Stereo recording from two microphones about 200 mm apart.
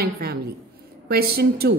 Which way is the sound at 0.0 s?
50° right (ahead or behind).